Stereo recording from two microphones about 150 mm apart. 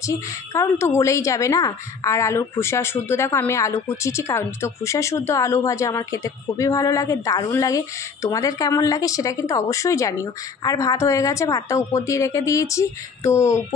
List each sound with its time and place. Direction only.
0.6 s a woman's voice: 20° left (ahead or behind)